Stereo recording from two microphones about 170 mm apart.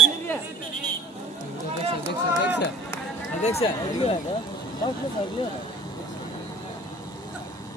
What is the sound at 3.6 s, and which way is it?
Speech, 30° left (ahead or behind).